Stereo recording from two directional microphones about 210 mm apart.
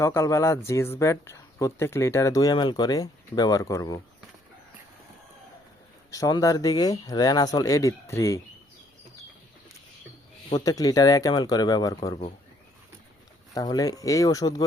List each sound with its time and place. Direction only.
0.0 s speech: 15° left (ahead or behind)
6.1 s speech: 15° left (ahead or behind)
10.6 s speech: 15° left (ahead or behind)
13.5 s speech: 20° left (ahead or behind)